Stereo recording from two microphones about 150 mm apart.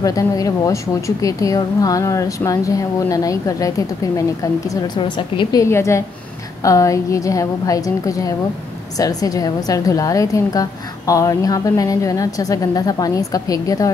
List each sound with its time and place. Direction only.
0.0 s a woman's voice: 25° left (ahead or behind)